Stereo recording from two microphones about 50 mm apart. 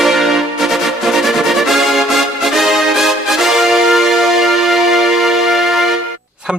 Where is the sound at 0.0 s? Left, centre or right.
Centre.